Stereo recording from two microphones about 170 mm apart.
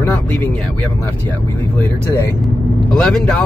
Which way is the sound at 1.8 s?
15° left (ahead or behind).